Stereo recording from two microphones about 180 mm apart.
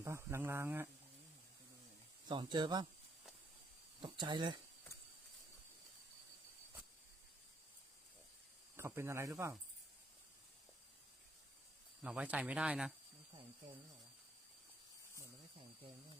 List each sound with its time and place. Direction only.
0.0 s speech: 15° right (ahead or behind)
2.2 s speech: 25° right (ahead or behind)
4.0 s speech: 25° right (ahead or behind)
8.7 s speech: 15° right (ahead or behind)
12.0 s speech: 5° right (ahead or behind)